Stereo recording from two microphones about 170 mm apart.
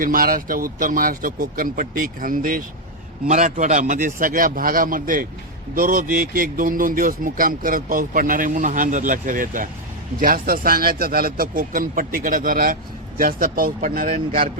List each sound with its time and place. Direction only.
0.0 s speech: 55° right (ahead or behind)